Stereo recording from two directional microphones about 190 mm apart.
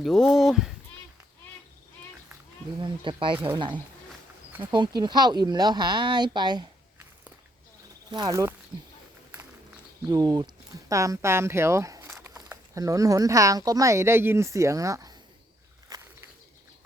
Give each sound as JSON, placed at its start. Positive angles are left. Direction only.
{"t": 0.0, "sound": "speech", "side_deg": 0}
{"t": 2.8, "sound": "speech", "side_deg": -25}
{"t": 4.7, "sound": "speech", "side_deg": -25}
{"t": 8.1, "sound": "speech", "side_deg": -20}
{"t": 10.1, "sound": "speech", "side_deg": -20}